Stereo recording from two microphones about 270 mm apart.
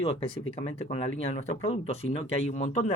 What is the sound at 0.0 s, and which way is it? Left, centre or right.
Speech, left.